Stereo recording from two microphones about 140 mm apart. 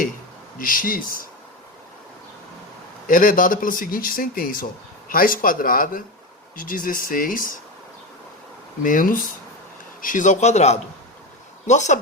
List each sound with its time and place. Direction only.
0.6 s speech: 85° left
3.1 s speech: 75° left (ahead or behind)
8.8 s speech: 75° left (ahead or behind)
10.0 s a man's voice: 70° left (ahead or behind)